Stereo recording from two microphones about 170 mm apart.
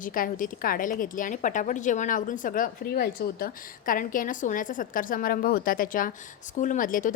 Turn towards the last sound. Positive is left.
turn(degrees=55)  # may be behind; listen again after turning